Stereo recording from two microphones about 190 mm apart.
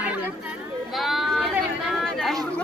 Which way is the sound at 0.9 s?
Centre (ahead or behind).